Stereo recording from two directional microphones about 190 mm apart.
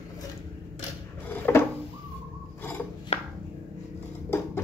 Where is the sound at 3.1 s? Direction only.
35° left (ahead or behind).